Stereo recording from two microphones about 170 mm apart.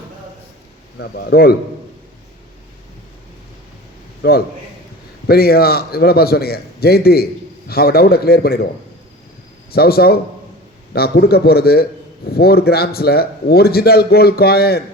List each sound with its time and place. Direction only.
0.9 s a man's voice: 70° left (ahead or behind)
4.2 s a man's voice: 65° left (ahead or behind)
9.7 s a man's voice: 65° left (ahead or behind)